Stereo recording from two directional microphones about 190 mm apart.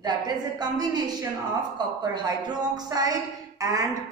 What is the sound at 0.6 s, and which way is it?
Speech, 20° right (ahead or behind).